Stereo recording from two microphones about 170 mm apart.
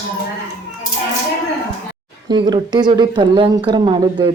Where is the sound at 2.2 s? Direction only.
25° right (ahead or behind).